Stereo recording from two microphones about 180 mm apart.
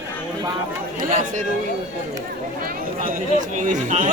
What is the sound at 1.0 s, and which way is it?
Chatter, 45° right (ahead or behind).